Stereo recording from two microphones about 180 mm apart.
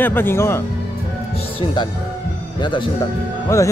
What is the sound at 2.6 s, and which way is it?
Speech, 25° left (ahead or behind).